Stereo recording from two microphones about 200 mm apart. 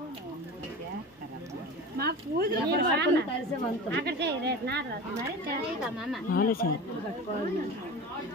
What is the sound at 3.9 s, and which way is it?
Speech, 55° right (ahead or behind).